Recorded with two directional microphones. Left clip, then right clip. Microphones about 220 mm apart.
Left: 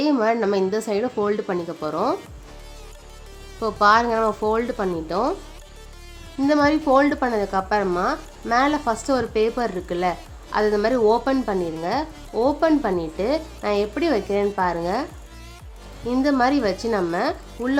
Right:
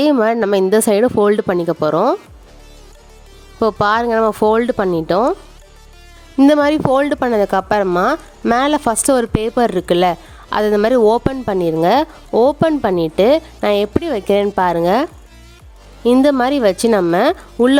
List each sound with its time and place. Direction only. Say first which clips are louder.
0.0 s speech: right 6 dB; 45° right (ahead or behind)
3.6 s speech: right 3 dB; 45° right (ahead or behind)
6.3 s speech: right 7 dB; 45° right (ahead or behind)
16.0 s speech: right 7 dB; 45° right (ahead or behind)